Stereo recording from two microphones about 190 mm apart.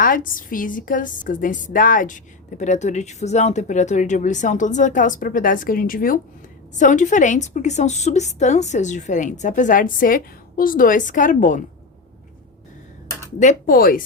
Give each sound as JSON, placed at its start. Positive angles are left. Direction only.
{"t": 0.0, "sound": "a woman's voice", "side_deg": 45}
{"t": 13.4, "sound": "a woman's voice", "side_deg": 45}